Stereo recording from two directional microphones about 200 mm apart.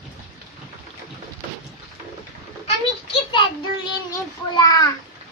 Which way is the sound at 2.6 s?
25° left (ahead or behind).